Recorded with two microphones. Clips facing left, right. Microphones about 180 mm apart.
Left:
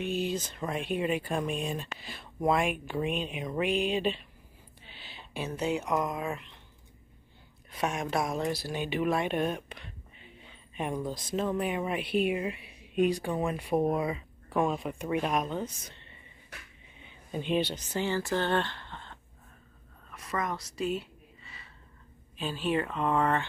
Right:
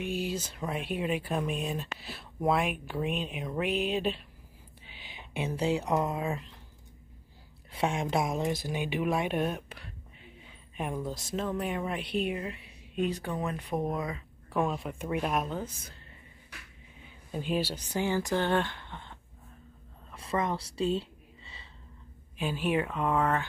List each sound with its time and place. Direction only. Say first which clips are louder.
0.0 s speech: left 2 dB; 10° right (ahead or behind)
5.3 s speech: right 2 dB; 30° right (ahead or behind)
7.7 s a woman's voice: right 1 dB; 25° right (ahead or behind); by 15.6 s 5° right (ahead or behind)
17.0 s speech: left 1 dB; 5° right (ahead or behind)
20.1 s a sound: right 3 dB; 30° right (ahead or behind)
22.4 s speech: right 1 dB; 10° right (ahead or behind)